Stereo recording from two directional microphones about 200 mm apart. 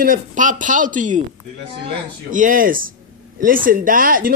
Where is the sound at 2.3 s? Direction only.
40° right (ahead or behind).